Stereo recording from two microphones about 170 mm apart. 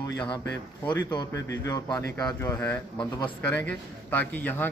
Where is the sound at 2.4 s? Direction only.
15° left (ahead or behind).